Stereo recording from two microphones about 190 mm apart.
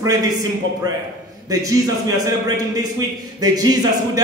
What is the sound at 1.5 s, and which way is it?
A man's voice, 20° right (ahead or behind).